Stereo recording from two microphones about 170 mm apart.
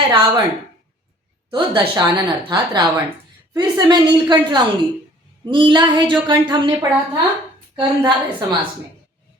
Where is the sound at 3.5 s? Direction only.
25° right (ahead or behind).